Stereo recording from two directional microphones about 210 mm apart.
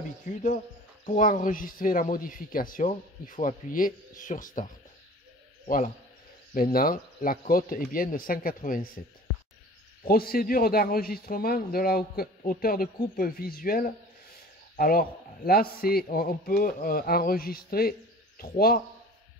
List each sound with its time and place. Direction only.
1.0 s speech: 40° left (ahead or behind)
6.5 s speech: 45° left (ahead or behind)
10.0 s speech: 45° left (ahead or behind)